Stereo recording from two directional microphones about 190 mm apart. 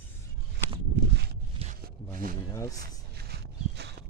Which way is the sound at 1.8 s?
50° right (ahead or behind).